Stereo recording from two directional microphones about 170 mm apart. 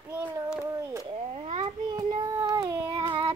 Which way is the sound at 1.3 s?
40° right (ahead or behind).